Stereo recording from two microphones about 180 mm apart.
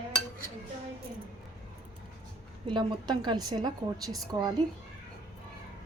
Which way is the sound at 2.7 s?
25° right (ahead or behind).